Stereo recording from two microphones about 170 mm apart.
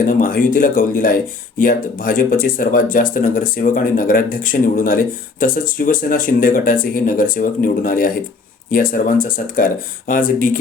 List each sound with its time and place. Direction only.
0.0 s speech: 55° left (ahead or behind)